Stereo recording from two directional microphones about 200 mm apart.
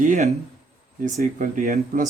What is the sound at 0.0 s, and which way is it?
Speech, 40° right (ahead or behind).